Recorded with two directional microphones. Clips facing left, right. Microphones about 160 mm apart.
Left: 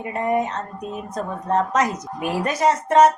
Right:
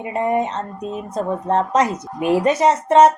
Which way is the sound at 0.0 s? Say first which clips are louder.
Right 2 dB; 30° right (ahead or behind).